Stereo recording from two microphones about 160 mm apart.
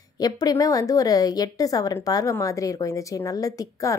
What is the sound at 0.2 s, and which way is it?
A woman's voice, 25° left (ahead or behind).